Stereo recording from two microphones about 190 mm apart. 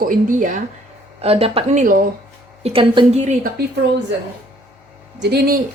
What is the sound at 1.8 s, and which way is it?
Speech, 45° right (ahead or behind).